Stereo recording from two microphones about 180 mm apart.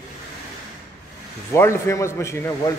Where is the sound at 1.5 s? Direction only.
15° left (ahead or behind).